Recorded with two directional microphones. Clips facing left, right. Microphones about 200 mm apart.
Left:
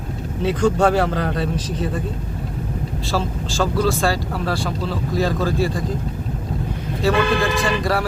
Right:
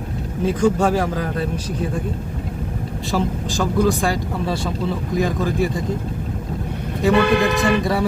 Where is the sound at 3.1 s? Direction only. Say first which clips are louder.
Right 3 dB; 15° right (ahead or behind).